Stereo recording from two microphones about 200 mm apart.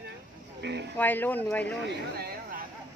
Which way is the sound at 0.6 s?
60° right (ahead or behind).